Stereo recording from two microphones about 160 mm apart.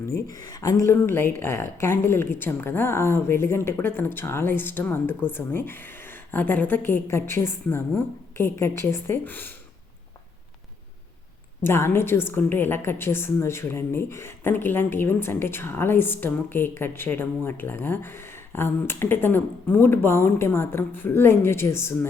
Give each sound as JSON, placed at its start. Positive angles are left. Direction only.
{"t": 0.4, "sound": "a woman's voice", "side_deg": 20}
{"t": 11.6, "sound": "a woman's voice", "side_deg": 15}